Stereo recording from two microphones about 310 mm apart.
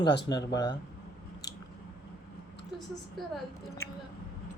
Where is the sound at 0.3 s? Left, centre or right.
Centre.